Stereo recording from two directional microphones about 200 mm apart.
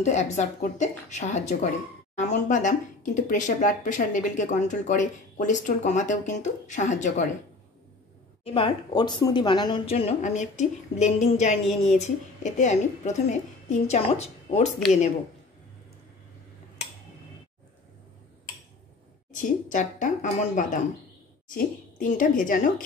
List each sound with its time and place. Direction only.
0.0 s speech: 35° left (ahead or behind)
8.5 s speech: 25° left (ahead or behind)
19.3 s speech: 40° left (ahead or behind)